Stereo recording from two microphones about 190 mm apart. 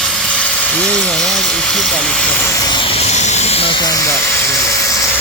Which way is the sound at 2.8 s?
35° left (ahead or behind).